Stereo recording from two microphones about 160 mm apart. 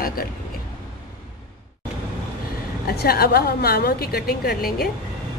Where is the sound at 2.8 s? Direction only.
75° left (ahead or behind).